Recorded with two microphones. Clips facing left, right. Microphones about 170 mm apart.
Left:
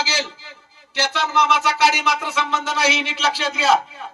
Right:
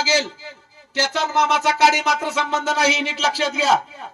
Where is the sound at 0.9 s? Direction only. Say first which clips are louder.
Even; 45° right (ahead or behind).